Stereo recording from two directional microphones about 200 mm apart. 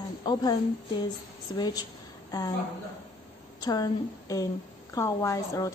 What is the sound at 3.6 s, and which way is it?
A woman's voice, 20° left (ahead or behind).